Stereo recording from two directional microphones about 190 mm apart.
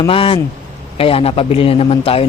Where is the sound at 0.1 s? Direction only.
30° left (ahead or behind).